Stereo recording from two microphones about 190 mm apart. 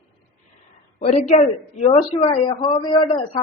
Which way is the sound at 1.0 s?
35° left (ahead or behind).